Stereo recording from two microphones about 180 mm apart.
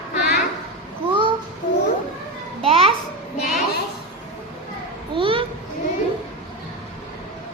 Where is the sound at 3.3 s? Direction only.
45° left (ahead or behind).